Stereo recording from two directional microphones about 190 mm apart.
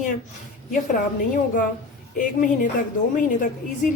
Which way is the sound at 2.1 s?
45° left (ahead or behind).